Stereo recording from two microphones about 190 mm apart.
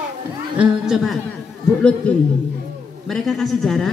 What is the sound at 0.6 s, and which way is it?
Speech, 5° right (ahead or behind).